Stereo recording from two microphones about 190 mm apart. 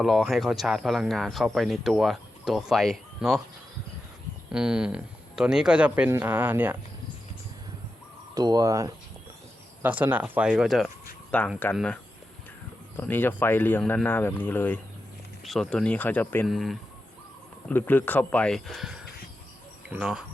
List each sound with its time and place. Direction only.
0.0 s speech: centre (ahead or behind)
4.5 s speech: 5° right (ahead or behind)
8.4 s speech: 20° right (ahead or behind); by 11.9 s 5° left (ahead or behind)
13.0 s speech: 10° left (ahead or behind)